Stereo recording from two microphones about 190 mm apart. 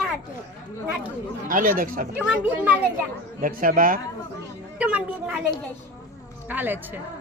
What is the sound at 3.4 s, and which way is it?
Speech, 45° right (ahead or behind).